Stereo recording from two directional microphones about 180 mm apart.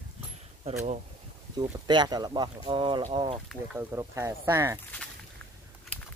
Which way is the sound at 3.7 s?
15° right (ahead or behind).